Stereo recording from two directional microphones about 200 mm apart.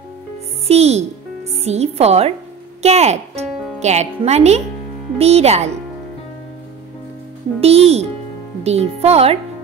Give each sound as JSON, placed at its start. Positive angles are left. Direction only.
{"t": 0.7, "sound": "a child's voice", "side_deg": -30}
{"t": 7.6, "sound": "speech", "side_deg": -30}